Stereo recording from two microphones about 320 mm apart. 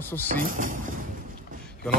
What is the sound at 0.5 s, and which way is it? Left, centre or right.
Speech, right.